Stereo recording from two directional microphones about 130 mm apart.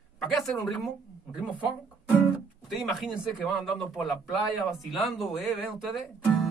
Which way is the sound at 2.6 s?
Centre (ahead or behind).